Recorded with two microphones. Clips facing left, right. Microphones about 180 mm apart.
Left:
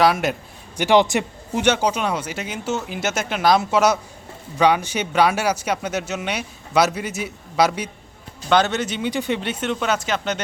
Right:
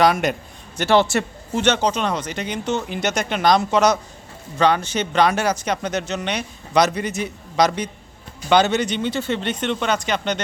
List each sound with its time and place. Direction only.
0.0 s speech: centre (ahead or behind)
0.8 s speech: 15° left (ahead or behind)